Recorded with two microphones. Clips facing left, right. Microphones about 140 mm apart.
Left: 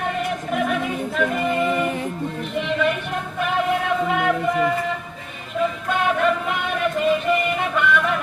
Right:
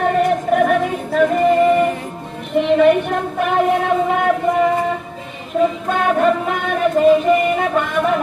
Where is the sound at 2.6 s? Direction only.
50° right (ahead or behind).